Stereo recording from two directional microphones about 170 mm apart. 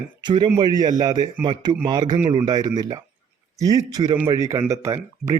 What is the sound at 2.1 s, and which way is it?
Speech, 35° right (ahead or behind).